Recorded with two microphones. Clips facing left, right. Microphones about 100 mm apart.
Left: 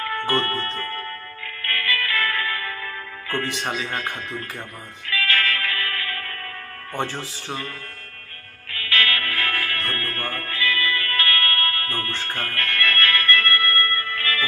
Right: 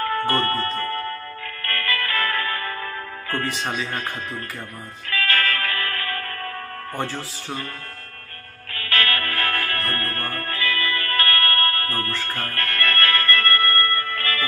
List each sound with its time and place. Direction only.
0.0 s speech: 40° right (ahead or behind)
0.8 s music: 40° right (ahead or behind)
3.8 s speech: 40° right (ahead or behind)
5.0 s music: 45° right (ahead or behind)
8.7 s music: 40° right (ahead or behind)